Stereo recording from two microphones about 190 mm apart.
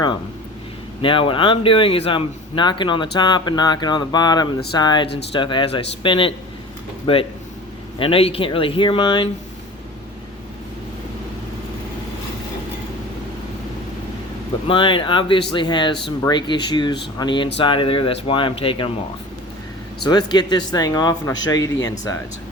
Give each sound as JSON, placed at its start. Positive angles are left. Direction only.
{"t": 1.0, "sound": "a man's voice", "side_deg": 25}
{"t": 14.7, "sound": "a man's voice", "side_deg": 25}
{"t": 20.1, "sound": "a man's voice", "side_deg": 20}